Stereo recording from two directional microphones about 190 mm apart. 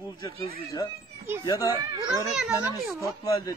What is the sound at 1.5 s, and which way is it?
Speech, 20° left (ahead or behind).